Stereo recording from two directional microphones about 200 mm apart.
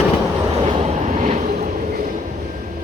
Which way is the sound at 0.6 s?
30° right (ahead or behind).